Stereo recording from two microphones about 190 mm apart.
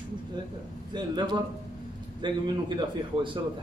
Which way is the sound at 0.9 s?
25° right (ahead or behind).